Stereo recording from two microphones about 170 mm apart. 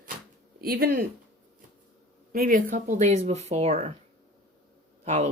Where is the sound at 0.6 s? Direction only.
60° right (ahead or behind).